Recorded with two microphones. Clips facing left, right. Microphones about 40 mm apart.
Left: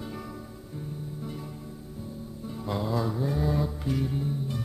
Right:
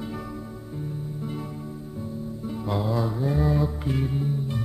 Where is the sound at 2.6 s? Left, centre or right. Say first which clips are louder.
Right 2 dB; centre.